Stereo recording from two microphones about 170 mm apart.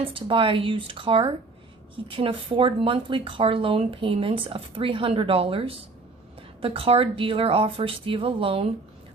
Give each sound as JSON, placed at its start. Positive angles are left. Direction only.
{"t": 0.0, "sound": "speech", "side_deg": -30}